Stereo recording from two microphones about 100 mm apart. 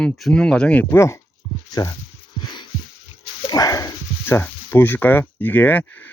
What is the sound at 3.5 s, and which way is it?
Dog, 40° left (ahead or behind).